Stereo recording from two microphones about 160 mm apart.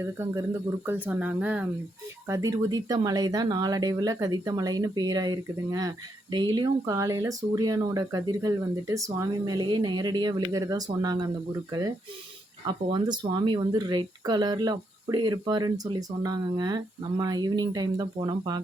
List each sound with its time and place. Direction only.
0.0 s speech: 15° right (ahead or behind)
2.2 s speech: 20° right (ahead or behind)